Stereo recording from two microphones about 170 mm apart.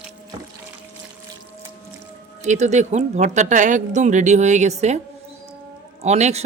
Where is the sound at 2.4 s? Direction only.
45° right (ahead or behind).